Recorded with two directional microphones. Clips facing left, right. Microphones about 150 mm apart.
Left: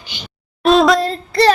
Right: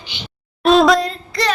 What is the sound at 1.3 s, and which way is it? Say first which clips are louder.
Child singing: left 8 dB; 35° left (ahead or behind).